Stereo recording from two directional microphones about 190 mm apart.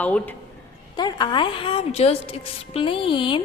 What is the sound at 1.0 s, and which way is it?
A woman's voice, 20° left (ahead or behind).